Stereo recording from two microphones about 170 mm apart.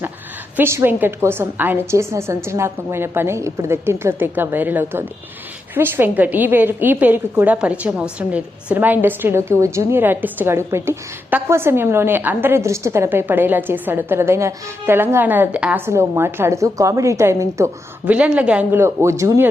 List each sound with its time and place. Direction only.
0.5 s a woman's voice: 15° right (ahead or behind)